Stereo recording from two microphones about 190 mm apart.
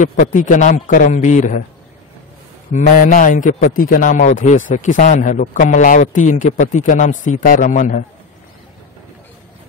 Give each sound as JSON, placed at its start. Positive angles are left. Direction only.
{"t": 0.0, "sound": "a man's voice", "side_deg": 40}
{"t": 2.7, "sound": "a man's voice", "side_deg": 40}